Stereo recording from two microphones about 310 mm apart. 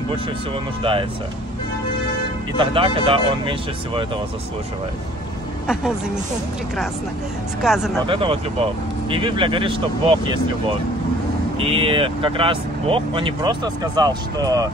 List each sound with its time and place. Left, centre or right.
2.5 s speech: centre
7.6 s speech: centre
8.1 s speech: centre
11.5 s speech: centre